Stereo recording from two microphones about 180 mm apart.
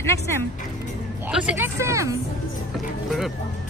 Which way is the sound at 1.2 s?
10° right (ahead or behind).